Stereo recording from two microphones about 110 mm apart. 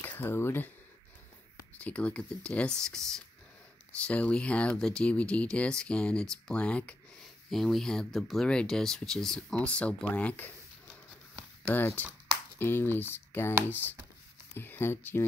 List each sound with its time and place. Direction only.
0.0 s speech: 20° left (ahead or behind)
1.8 s speech: 15° left (ahead or behind)
11.7 s speech: 15° left (ahead or behind)
14.6 s speech: 20° left (ahead or behind)